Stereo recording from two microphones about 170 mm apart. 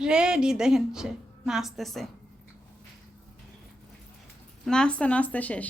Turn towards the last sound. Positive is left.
turn(degrees=10)  # may be behind; listen again after turning